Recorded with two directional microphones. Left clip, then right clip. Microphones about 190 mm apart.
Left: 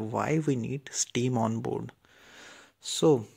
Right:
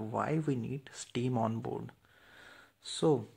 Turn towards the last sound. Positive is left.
turn(degrees=30)  # may be behind; listen again after turning